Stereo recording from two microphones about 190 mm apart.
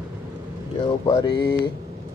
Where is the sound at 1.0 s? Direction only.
20° left (ahead or behind).